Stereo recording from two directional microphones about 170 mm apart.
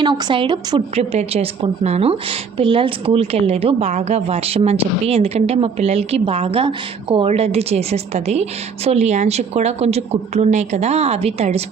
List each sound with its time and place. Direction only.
0.0 s a woman's voice: 25° right (ahead or behind)